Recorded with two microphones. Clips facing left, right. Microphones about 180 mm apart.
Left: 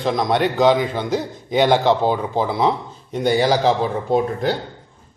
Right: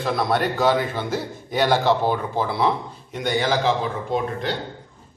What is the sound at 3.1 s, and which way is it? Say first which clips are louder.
A man's voice: left 5 dB; 30° left (ahead or behind).